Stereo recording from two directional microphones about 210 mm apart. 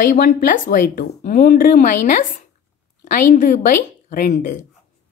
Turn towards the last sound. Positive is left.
turn(degrees=40)  # may be behind; listen again after turning